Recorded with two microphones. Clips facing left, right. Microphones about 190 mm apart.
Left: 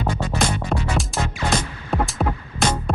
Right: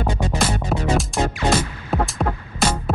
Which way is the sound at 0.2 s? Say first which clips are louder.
Right 2 dB; 15° right (ahead or behind).